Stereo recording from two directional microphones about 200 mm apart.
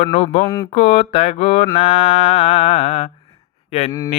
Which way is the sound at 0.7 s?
35° left (ahead or behind).